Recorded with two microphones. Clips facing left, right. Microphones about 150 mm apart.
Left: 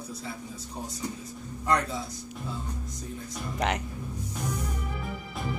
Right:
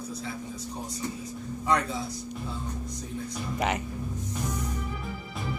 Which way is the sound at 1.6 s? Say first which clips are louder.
Even; centre (ahead or behind).